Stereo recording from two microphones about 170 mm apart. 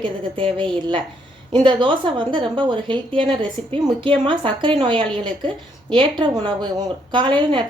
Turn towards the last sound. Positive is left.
turn(degrees=-30)  # may be behind; listen again after turning